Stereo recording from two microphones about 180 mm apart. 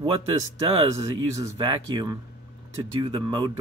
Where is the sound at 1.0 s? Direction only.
20° right (ahead or behind).